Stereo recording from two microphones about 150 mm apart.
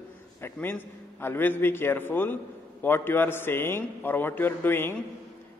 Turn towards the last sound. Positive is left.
turn(degrees=15)  # may be behind; listen again after turning